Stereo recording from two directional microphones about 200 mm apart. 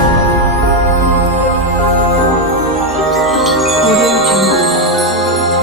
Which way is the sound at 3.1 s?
Centre (ahead or behind).